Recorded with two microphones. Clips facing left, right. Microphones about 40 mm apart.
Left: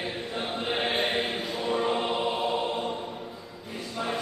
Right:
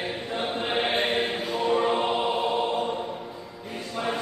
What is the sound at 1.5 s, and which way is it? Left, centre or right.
Music, centre.